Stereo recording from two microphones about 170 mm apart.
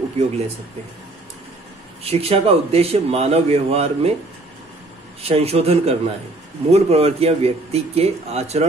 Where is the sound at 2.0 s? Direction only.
35° right (ahead or behind).